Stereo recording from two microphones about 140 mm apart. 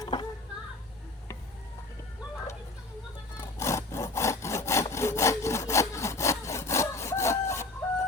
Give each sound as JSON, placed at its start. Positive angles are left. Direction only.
{"t": 0.0, "sound": "children playing", "side_deg": 35}
{"t": 3.3, "sound": "sawing", "side_deg": 20}